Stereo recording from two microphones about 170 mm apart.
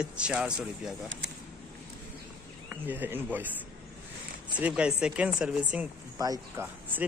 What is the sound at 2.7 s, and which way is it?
Speech, 10° right (ahead or behind).